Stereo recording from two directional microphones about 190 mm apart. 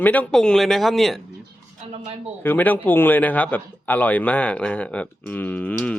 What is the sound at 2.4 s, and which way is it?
Speech, 10° left (ahead or behind).